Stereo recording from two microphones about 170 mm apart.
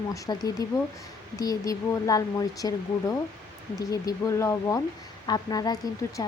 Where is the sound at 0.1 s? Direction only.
20° left (ahead or behind).